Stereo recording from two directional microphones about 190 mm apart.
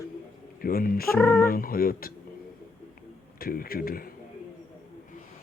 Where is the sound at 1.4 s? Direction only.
50° left (ahead or behind).